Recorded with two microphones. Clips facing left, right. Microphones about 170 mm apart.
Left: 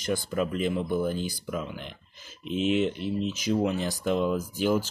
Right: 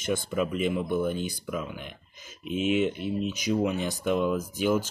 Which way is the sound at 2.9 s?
50° right (ahead or behind).